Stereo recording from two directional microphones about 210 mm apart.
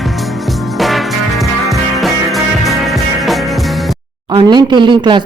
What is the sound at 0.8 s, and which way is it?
Music, centre (ahead or behind).